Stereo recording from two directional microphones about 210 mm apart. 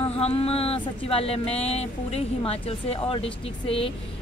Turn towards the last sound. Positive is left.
turn(degrees=25)  # may be behind; listen again after turning